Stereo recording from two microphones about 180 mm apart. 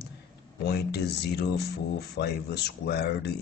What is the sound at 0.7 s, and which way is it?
Speech, 65° left (ahead or behind).